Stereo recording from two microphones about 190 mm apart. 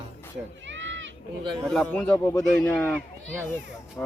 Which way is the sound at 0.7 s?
75° right (ahead or behind).